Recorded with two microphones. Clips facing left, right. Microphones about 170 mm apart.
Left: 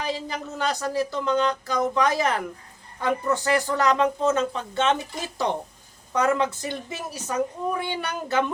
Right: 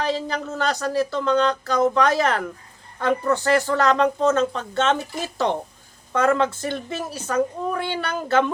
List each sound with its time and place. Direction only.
0.0 s speech: 15° left (ahead or behind)
6.1 s speech: 15° left (ahead or behind)